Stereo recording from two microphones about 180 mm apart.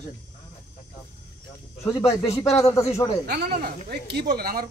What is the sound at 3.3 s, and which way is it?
Speech, 65° right (ahead or behind).